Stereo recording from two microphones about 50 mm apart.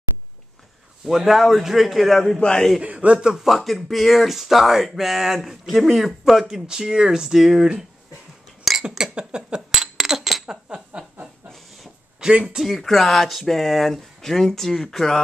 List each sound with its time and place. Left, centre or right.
1.0 s speech: centre
2.2 s a man's voice: centre
2.8 s a man's voice: right
3.4 s speech: centre
9.1 s a sound: centre
9.7 s a sound: centre
10.4 s a sound: centre
12.2 s speech: centre
12.5 s speech: centre